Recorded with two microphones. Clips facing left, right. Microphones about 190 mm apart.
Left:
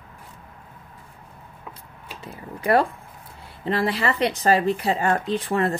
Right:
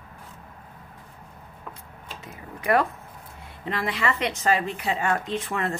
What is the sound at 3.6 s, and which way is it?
Speech, 35° left (ahead or behind).